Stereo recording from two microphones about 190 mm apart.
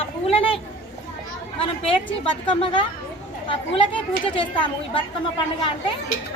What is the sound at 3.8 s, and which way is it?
A woman's voice, 25° left (ahead or behind).